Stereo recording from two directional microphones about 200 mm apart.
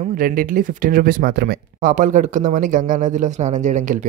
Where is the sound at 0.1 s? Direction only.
45° right (ahead or behind).